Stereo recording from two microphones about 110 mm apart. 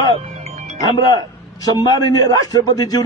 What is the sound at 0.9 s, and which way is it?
A man's voice, 40° left (ahead or behind).